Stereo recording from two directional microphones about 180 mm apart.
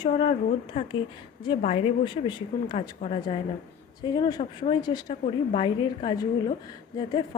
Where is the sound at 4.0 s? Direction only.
20° left (ahead or behind).